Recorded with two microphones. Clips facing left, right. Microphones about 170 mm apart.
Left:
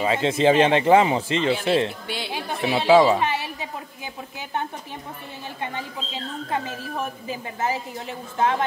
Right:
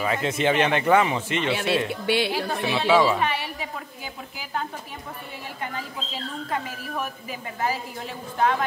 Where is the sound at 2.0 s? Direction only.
65° right (ahead or behind).